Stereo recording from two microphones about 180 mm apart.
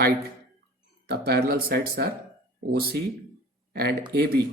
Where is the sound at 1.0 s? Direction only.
60° right (ahead or behind).